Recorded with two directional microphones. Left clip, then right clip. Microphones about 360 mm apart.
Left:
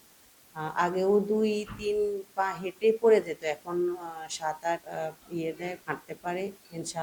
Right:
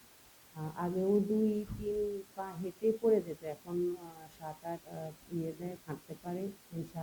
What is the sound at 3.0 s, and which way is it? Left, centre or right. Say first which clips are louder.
Speech: left 9 dB; centre.